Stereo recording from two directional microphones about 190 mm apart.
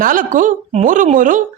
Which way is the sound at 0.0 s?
45° right (ahead or behind).